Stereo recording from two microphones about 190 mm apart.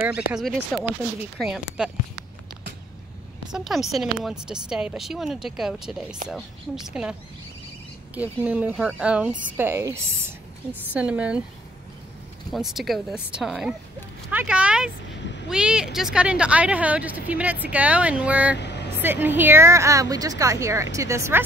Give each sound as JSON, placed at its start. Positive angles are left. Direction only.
{"t": 0.3, "sound": "speech", "side_deg": 0}
{"t": 3.5, "sound": "speech", "side_deg": 0}
{"t": 12.5, "sound": "speech", "side_deg": 0}